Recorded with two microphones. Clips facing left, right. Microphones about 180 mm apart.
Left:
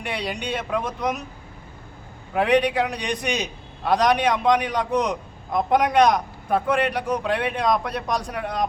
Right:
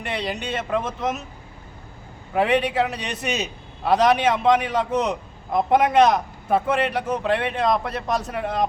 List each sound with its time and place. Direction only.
0.0 s a man's voice: centre (ahead or behind)
2.3 s a man's voice: centre (ahead or behind)